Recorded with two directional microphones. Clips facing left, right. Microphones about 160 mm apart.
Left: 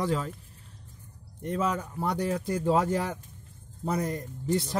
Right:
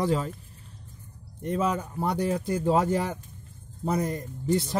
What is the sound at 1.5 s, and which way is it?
Speech, 15° right (ahead or behind).